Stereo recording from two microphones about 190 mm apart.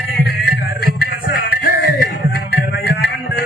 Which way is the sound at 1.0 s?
55° left (ahead or behind).